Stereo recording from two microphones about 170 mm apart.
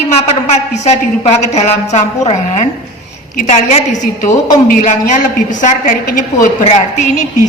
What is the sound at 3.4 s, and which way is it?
A woman's voice, 45° left (ahead or behind).